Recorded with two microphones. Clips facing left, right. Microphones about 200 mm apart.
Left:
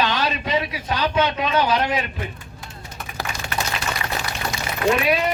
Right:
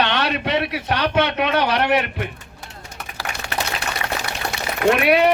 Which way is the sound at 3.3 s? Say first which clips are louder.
Right 1 dB; 70° right (ahead or behind).